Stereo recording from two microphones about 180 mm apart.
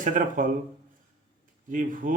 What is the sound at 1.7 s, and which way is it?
Speech, 50° right (ahead or behind).